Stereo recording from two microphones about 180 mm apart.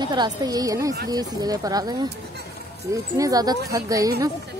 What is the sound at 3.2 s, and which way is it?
Speech, 20° right (ahead or behind).